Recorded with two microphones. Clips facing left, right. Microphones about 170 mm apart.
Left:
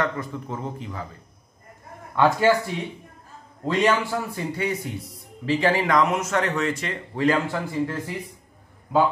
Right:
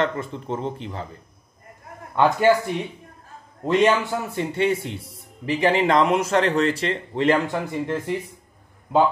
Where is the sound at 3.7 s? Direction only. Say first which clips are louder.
Right 3 dB; 20° right (ahead or behind).